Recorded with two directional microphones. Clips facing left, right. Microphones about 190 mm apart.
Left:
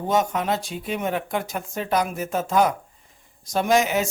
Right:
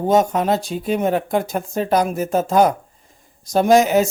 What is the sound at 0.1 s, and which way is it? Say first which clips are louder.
Speech: right 6 dB; 35° right (ahead or behind).